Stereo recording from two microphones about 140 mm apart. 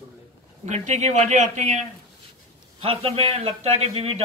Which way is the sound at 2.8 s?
45° right (ahead or behind).